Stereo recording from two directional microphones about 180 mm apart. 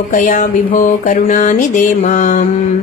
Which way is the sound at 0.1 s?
45° left (ahead or behind).